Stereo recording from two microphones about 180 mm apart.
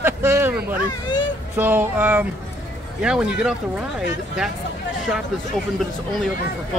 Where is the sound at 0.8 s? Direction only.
25° left (ahead or behind).